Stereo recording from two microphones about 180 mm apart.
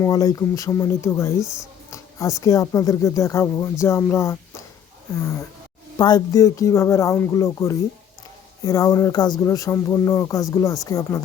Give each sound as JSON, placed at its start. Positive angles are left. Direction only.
{"t": 0.0, "sound": "speech", "side_deg": 20}
{"t": 1.9, "sound": "a sound", "side_deg": 15}
{"t": 2.4, "sound": "speech", "side_deg": 20}